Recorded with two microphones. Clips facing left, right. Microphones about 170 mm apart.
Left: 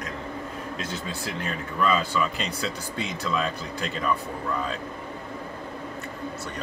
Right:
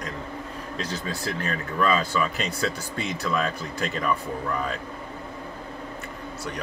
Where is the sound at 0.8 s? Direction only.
35° right (ahead or behind).